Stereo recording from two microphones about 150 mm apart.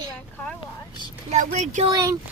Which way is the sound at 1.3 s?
55° right (ahead or behind).